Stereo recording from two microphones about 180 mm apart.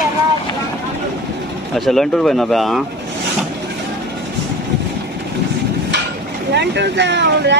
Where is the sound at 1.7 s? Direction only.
Centre (ahead or behind).